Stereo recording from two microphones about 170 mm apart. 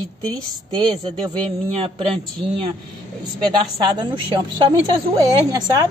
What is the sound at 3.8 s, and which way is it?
Speech, 25° right (ahead or behind).